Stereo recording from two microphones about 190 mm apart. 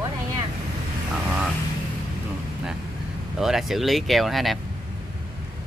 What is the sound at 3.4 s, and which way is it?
Speech, centre (ahead or behind).